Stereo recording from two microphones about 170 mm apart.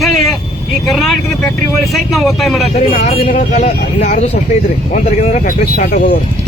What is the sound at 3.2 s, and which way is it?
Speech, 45° left (ahead or behind).